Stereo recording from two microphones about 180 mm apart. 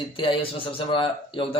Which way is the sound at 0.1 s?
30° left (ahead or behind).